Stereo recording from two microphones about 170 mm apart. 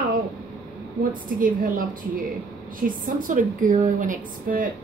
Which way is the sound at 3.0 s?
50° right (ahead or behind).